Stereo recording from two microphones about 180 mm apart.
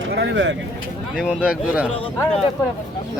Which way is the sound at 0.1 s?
70° right (ahead or behind).